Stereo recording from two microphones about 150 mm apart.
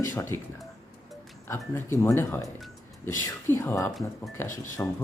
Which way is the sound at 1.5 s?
15° left (ahead or behind).